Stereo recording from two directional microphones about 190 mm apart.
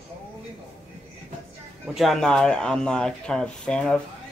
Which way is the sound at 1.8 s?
Centre (ahead or behind).